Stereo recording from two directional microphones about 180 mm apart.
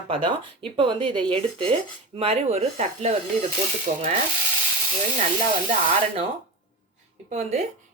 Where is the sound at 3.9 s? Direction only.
50° right (ahead or behind).